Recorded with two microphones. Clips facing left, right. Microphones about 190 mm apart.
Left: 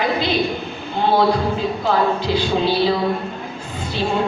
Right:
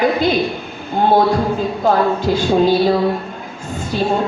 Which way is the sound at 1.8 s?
45° right (ahead or behind).